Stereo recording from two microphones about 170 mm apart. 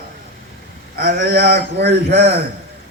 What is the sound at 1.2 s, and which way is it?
Speech, 80° right.